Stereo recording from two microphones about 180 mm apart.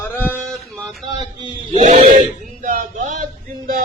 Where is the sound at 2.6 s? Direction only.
45° right (ahead or behind).